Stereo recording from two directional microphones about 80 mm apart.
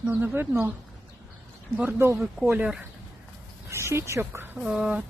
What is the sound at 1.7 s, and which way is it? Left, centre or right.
Speech, right.